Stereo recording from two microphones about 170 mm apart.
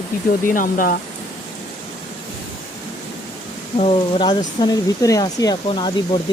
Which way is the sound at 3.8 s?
30° left (ahead or behind).